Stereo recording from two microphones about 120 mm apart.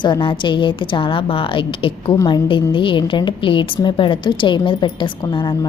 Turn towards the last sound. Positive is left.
turn(degrees=40)  # may be behind; listen again after turning